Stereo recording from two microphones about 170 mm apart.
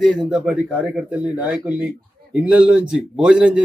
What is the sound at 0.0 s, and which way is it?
A man's voice, 5° right (ahead or behind).